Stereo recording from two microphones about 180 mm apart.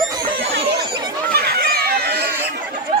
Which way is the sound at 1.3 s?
60° right (ahead or behind).